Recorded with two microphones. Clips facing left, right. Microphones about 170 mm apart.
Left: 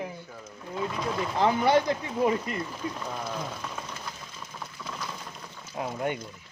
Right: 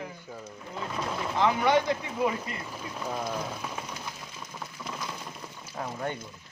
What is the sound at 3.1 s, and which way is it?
Speech, 10° right (ahead or behind).